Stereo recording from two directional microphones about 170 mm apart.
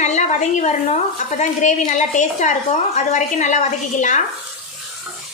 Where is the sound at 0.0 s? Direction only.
45° left (ahead or behind).